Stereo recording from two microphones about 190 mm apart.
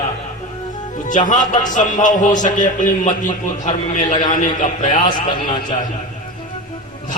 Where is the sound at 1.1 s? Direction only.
40° left (ahead or behind).